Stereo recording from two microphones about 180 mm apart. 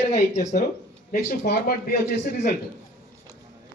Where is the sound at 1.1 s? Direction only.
60° left (ahead or behind).